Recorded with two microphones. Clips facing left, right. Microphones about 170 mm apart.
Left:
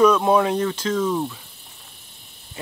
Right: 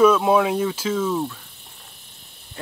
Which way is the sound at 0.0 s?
5° right (ahead or behind).